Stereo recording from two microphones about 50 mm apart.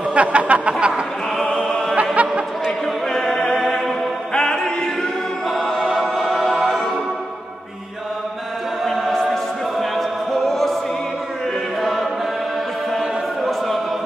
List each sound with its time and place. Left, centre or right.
0.1 s a sound: right
1.4 s music: centre
2.2 s a sound: right
3.1 s a capella: centre
3.5 s music: centre
4.3 s music: centre
8.8 s chant: centre
9.1 s music: centre
11.8 s choir: centre